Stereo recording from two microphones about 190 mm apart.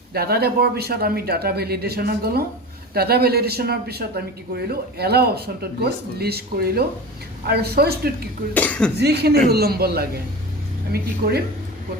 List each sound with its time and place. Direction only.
0.1 s speech: 55° right (ahead or behind)
8.5 s speech: 5° left (ahead or behind)
9.0 s speech: 60° right (ahead or behind)
11.2 s speech: 55° right (ahead or behind)